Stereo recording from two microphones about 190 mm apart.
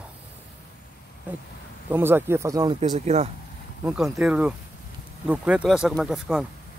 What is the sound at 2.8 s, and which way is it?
Speech, 35° right (ahead or behind).